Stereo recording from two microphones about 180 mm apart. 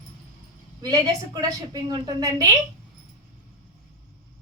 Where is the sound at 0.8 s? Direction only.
20° right (ahead or behind).